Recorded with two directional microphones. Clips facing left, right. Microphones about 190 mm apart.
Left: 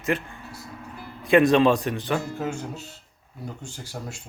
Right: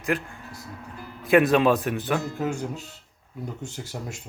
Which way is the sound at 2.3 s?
15° right (ahead or behind).